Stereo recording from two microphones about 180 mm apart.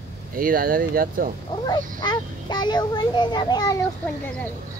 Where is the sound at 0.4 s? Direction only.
50° right (ahead or behind).